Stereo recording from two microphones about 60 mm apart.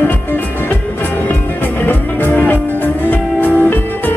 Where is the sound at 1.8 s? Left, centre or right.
Left.